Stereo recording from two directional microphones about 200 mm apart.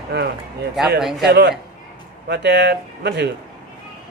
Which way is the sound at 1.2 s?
55° right (ahead or behind).